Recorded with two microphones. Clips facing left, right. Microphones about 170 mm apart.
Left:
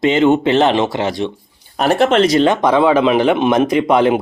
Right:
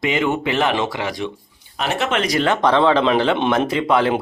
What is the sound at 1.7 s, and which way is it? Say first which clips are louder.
Speech: left 9 dB; 40° left (ahead or behind).